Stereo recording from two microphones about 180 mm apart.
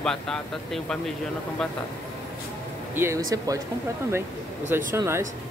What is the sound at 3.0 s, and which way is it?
Speech, 15° right (ahead or behind).